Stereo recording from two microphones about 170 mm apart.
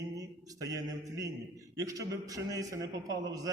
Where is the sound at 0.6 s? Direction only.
20° right (ahead or behind).